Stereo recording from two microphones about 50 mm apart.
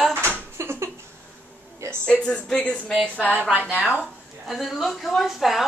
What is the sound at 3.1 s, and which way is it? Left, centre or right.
Speech, left.